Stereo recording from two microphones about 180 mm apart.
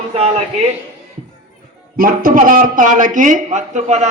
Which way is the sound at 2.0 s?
50° right (ahead or behind).